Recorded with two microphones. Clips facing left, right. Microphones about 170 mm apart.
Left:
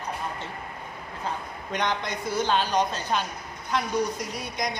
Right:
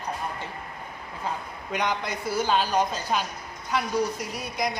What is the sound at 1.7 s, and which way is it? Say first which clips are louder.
Speech: even; 10° right (ahead or behind).